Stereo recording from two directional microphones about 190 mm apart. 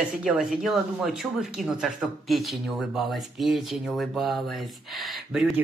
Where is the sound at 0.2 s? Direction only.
Centre (ahead or behind).